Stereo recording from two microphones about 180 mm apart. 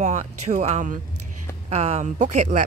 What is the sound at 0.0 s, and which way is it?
A woman's voice, 40° right (ahead or behind).